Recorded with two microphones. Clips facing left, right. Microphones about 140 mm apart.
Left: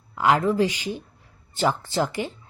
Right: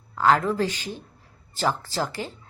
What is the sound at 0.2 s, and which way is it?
A woman's voice, 15° left (ahead or behind).